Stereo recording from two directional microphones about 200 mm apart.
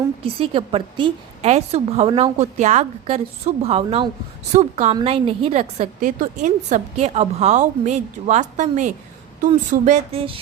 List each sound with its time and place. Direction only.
0.2 s a woman's voice: 25° right (ahead or behind)